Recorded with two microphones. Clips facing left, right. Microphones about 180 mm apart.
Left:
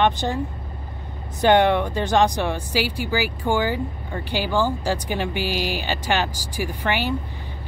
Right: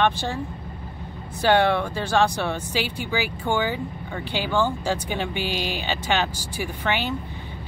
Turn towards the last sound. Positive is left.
turn(degrees=10)  # may be behind; listen again after turning